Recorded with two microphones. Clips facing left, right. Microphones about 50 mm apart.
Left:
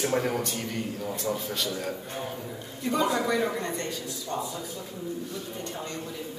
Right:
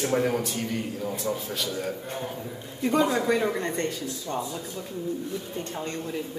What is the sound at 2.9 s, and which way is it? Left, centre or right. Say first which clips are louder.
Speech: right 2 dB; right.